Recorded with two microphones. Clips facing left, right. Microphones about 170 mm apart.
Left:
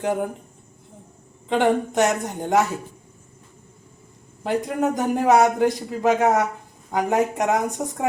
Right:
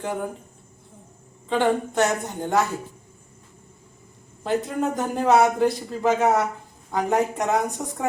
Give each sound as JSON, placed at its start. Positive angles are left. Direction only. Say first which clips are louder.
{"t": 1.5, "sound": "a man's voice", "louder": "left 2 dB", "side_deg": 15}
{"t": 4.4, "sound": "a man's voice", "louder": "left 2 dB", "side_deg": 15}